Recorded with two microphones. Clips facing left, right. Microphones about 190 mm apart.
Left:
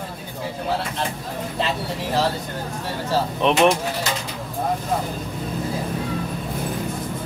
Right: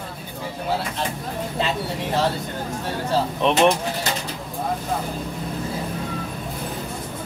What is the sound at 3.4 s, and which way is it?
Speech, centre (ahead or behind).